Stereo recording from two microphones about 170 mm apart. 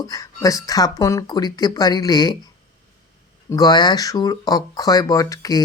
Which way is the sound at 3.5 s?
25° left (ahead or behind).